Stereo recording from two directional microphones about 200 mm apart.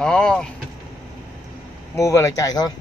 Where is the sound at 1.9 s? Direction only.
15° left (ahead or behind).